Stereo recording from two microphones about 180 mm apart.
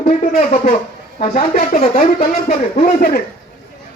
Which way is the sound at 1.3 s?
50° left (ahead or behind).